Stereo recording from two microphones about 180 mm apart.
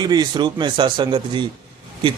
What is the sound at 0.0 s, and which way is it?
A man's voice, 25° right (ahead or behind).